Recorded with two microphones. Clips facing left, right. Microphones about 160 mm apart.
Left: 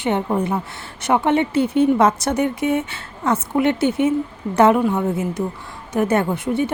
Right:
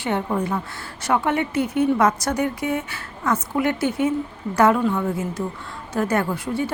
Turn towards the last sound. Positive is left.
turn(degrees=20)  # may be behind; listen again after turning